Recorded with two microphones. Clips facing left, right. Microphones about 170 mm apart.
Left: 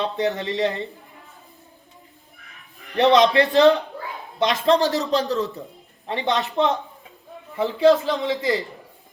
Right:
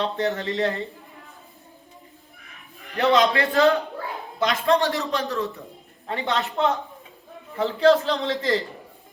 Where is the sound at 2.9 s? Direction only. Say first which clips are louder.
Left 4 dB; 20° left (ahead or behind).